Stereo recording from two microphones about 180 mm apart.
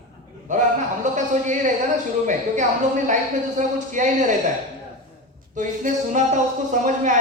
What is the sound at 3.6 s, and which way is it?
Speech, 45° right (ahead or behind).